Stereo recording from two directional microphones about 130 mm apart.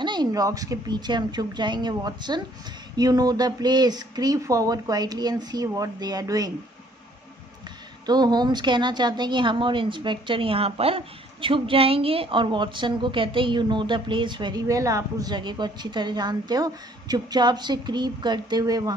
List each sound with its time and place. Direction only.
0.0 s a woman's voice: 35° right (ahead or behind)
8.1 s a woman's voice: 30° right (ahead or behind)